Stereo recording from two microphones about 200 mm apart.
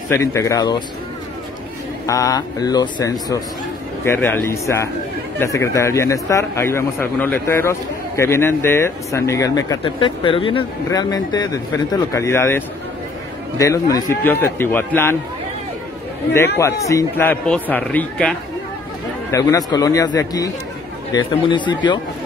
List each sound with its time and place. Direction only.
0.1 s speech: 15° left (ahead or behind)
2.0 s a man's voice: 15° left (ahead or behind)
16.5 s speech: 15° left (ahead or behind)
19.3 s a man's voice: 20° left (ahead or behind)